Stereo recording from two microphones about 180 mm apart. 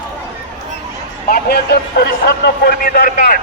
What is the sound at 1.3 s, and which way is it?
A man's voice, 55° left (ahead or behind).